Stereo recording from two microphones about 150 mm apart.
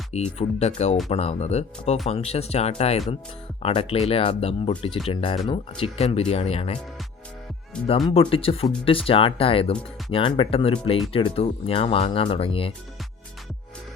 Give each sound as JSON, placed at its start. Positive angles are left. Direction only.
{"t": 0.1, "sound": "speech", "side_deg": 45}
{"t": 8.1, "sound": "speech", "side_deg": 40}